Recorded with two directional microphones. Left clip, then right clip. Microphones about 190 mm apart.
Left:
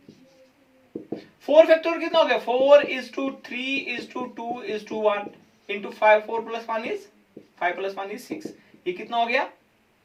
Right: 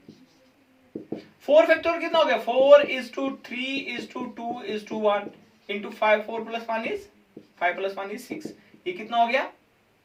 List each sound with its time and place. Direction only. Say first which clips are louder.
1.1 s speech: left 2 dB; 15° right (ahead or behind)